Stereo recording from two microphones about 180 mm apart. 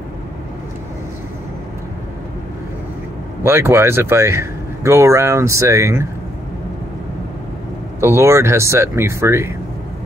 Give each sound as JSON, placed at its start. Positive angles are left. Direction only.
{"t": 3.4, "sound": "speech", "side_deg": -15}
{"t": 8.0, "sound": "speech", "side_deg": -15}